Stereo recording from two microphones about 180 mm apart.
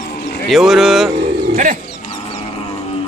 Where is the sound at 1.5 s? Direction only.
45° right (ahead or behind).